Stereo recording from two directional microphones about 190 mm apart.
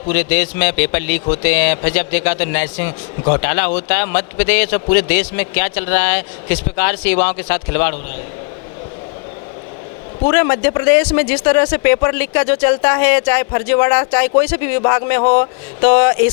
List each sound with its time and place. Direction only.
0.1 s a man's voice: 15° left (ahead or behind)
10.2 s a man's voice: 20° left (ahead or behind)